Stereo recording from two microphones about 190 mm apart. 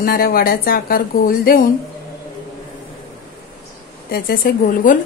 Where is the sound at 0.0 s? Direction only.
50° left (ahead or behind).